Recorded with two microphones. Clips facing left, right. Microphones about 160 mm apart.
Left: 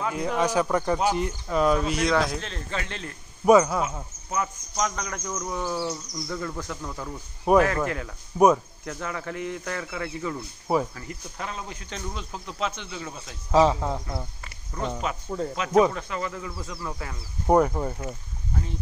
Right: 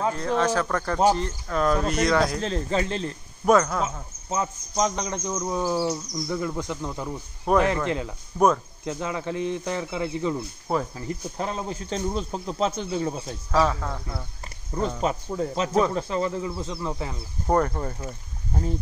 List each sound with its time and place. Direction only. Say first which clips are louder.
0.1 s speech: right 1 dB; 10° left (ahead or behind)
2.4 s speech: right 8 dB; 30° right (ahead or behind)
3.4 s speech: left 2 dB; 5° left (ahead or behind)
4.3 s speech: right 2 dB; 30° right (ahead or behind)
5.9 s speech: right 4 dB; 10° right (ahead or behind)
7.5 s speech: left 1 dB; 10° left (ahead or behind)
8.8 s speech: right 6 dB; 20° right (ahead or behind)
11.0 s speech: right 6 dB; 30° right (ahead or behind)
13.5 s speech: left 3 dB; 20° left (ahead or behind)
14.7 s speech: right 4 dB; 30° right (ahead or behind)
15.2 s speech: right 2 dB; centre (ahead or behind)
15.5 s speech: left 3 dB; 30° right (ahead or behind)
17.5 s speech: left 3 dB; 10° left (ahead or behind)
18.5 s speech: right 3 dB; 40° right (ahead or behind)